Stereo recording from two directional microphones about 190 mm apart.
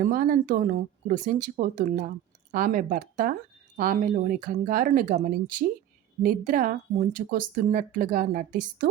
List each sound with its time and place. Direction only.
0.0 s a woman's voice: 45° right (ahead or behind)